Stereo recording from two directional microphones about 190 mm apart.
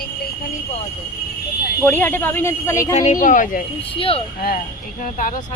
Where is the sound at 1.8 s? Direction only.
10° left (ahead or behind).